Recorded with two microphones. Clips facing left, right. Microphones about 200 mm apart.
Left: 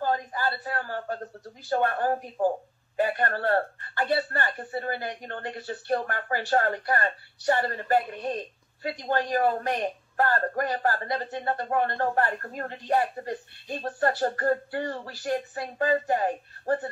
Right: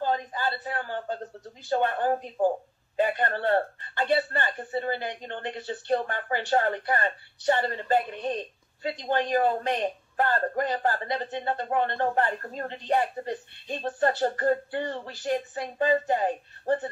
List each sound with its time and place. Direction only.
0.0 s speech: 20° right (ahead or behind)